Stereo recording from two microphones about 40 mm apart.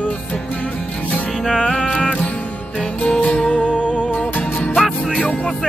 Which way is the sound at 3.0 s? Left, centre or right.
Left.